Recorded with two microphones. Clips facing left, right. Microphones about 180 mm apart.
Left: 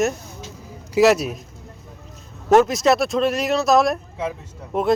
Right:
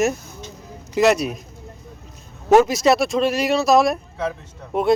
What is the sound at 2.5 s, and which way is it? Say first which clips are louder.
Speech: right 1 dB; centre (ahead or behind).